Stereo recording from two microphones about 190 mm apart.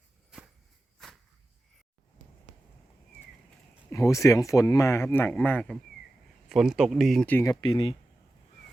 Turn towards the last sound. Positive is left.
turn(degrees=25)  # may be behind; listen again after turning